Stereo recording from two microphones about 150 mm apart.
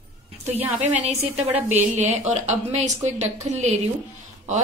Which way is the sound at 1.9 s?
50° right (ahead or behind).